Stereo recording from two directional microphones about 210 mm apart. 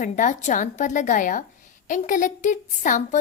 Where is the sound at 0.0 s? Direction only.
35° left (ahead or behind).